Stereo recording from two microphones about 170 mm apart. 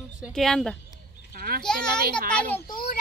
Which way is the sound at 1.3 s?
60° right (ahead or behind).